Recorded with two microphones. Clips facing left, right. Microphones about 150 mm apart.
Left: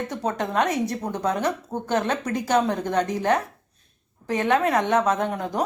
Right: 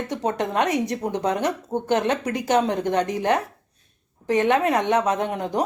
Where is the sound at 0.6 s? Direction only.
15° right (ahead or behind).